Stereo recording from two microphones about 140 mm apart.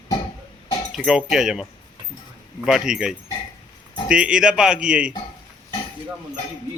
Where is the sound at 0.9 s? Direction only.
5° right (ahead or behind).